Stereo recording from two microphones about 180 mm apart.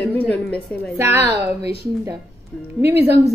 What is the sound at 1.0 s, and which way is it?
Speech, 15° right (ahead or behind).